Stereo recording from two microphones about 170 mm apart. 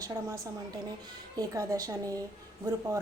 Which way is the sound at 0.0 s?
20° right (ahead or behind).